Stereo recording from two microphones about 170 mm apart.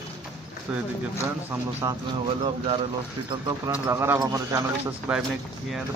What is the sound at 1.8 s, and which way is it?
Speech, 25° right (ahead or behind).